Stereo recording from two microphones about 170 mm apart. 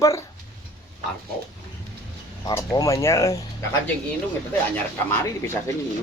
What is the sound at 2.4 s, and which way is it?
Speech, 20° left (ahead or behind).